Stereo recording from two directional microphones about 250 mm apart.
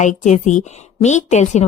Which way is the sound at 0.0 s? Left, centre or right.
Left.